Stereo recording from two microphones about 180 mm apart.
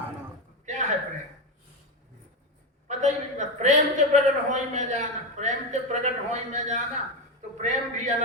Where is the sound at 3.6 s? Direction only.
40° right (ahead or behind).